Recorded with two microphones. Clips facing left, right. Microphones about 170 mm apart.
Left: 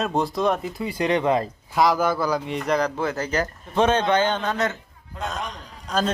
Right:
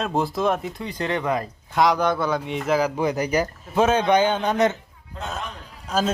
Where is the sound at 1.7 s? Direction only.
Centre (ahead or behind); by 4.7 s 20° right (ahead or behind).